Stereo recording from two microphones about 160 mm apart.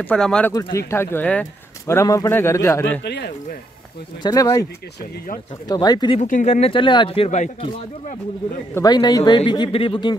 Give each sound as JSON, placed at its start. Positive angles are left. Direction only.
{"t": 0.0, "sound": "speech", "side_deg": 5}
{"t": 0.5, "sound": "speech", "side_deg": 25}
{"t": 3.0, "sound": "speech", "side_deg": 90}
{"t": 4.2, "sound": "a man's voice", "side_deg": 25}
{"t": 5.7, "sound": "a man's voice", "side_deg": 25}
{"t": 6.1, "sound": "speech", "side_deg": 50}
{"t": 8.7, "sound": "a man's voice", "side_deg": 25}